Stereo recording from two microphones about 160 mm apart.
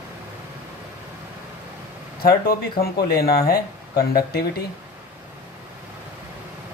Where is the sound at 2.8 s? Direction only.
75° left (ahead or behind).